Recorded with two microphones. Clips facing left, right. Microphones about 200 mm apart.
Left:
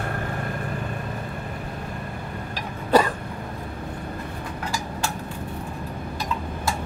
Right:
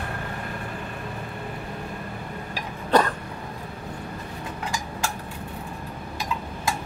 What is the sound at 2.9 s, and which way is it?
Cough, 10° left (ahead or behind).